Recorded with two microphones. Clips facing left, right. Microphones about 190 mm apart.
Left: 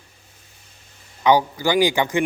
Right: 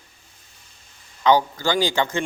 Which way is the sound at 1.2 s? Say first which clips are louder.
Left 1 dB; 15° left (ahead or behind).